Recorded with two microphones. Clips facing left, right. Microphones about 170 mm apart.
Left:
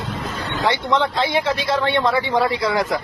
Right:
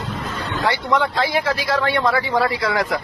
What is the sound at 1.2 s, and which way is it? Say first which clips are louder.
Speech: left 1 dB; 25° left (ahead or behind).